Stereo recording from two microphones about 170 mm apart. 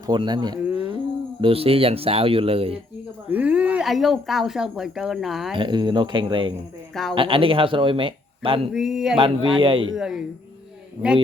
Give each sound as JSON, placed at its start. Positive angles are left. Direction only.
{"t": 0.1, "sound": "speech", "side_deg": -25}
{"t": 3.2, "sound": "speech", "side_deg": -10}
{"t": 5.5, "sound": "speech", "side_deg": -25}
{"t": 8.7, "sound": "speech", "side_deg": -5}
{"t": 9.1, "sound": "speech", "side_deg": -30}
{"t": 9.9, "sound": "speech", "side_deg": -5}